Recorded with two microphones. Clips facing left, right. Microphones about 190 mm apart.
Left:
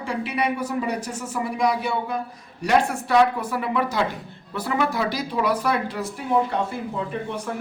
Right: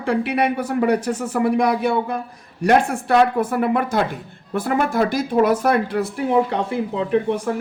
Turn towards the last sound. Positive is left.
turn(degrees=-60)  # may be behind; listen again after turning